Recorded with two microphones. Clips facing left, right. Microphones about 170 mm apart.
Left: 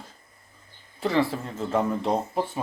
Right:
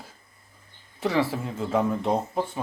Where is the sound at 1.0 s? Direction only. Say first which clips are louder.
Left 1 dB; 10° right (ahead or behind).